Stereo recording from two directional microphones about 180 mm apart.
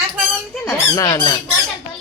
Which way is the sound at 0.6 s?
15° left (ahead or behind).